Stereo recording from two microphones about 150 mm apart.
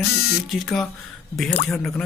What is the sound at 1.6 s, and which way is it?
Speech, 15° left (ahead or behind).